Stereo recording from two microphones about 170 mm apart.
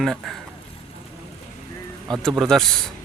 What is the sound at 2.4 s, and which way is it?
Speech, centre (ahead or behind).